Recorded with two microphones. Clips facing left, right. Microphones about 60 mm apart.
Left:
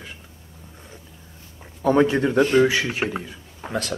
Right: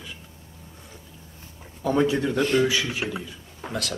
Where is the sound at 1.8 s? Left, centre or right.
Left.